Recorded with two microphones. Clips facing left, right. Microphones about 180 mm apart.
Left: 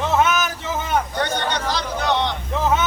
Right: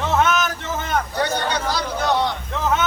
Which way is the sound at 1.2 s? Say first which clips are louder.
Right 1 dB; 10° right (ahead or behind).